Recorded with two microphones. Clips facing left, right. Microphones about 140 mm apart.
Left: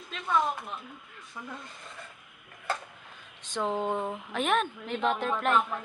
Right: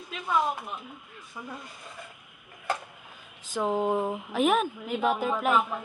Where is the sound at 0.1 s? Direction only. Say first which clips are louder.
Right 1 dB; 5° right (ahead or behind).